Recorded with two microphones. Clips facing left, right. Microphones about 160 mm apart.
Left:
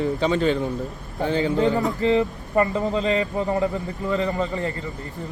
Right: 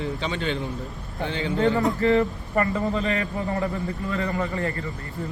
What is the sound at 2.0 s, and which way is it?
A man's voice, 20° left (ahead or behind).